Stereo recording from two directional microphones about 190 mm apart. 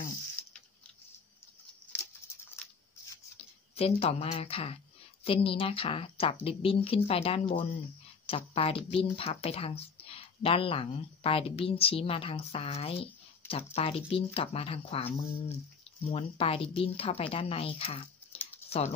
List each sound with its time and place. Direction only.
3.7 s speech: 30° left (ahead or behind)